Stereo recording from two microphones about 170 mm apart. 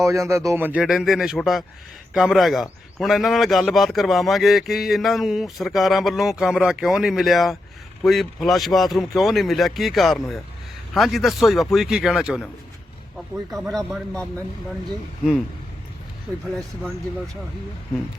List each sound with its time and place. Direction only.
0.0 s a man's voice: 15° right (ahead or behind); by 14.3 s centre (ahead or behind)